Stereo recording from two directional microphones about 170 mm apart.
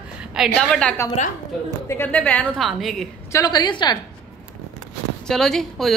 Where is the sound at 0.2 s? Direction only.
5° right (ahead or behind).